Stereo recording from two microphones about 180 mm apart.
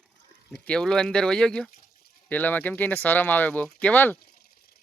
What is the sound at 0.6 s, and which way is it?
Speech, 5° left (ahead or behind).